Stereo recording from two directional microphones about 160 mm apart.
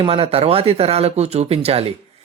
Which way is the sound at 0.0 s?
35° right (ahead or behind).